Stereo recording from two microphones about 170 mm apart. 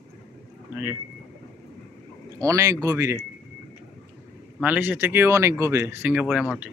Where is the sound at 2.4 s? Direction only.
20° right (ahead or behind).